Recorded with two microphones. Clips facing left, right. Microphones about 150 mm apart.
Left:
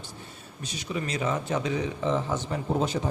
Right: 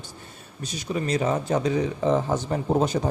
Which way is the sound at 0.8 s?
40° right (ahead or behind).